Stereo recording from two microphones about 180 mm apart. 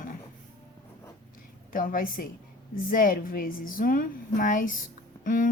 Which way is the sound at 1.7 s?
50° left (ahead or behind).